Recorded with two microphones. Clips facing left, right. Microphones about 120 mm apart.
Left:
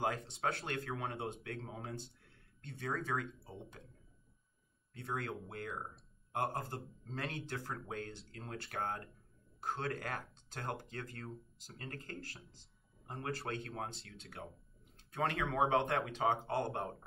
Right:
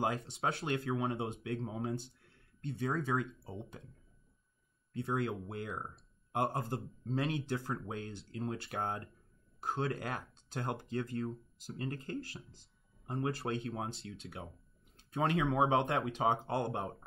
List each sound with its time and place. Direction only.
0.4 s speech: 20° right (ahead or behind)
4.9 s speech: 15° right (ahead or behind)
15.0 s speech: 15° right (ahead or behind)